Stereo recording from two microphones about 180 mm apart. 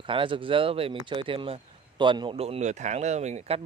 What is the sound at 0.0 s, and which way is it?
Speech, 30° right (ahead or behind).